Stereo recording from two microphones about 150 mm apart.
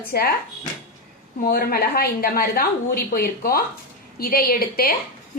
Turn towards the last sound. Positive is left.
turn(degrees=85)